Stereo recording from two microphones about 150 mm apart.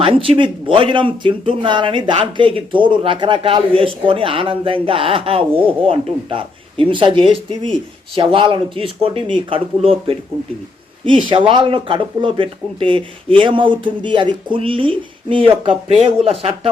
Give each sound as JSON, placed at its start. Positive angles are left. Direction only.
{"t": 0.0, "sound": "speech", "side_deg": -35}
{"t": 11.3, "sound": "speech", "side_deg": -35}